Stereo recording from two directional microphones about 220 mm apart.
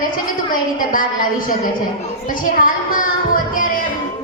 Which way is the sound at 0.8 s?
40° left (ahead or behind).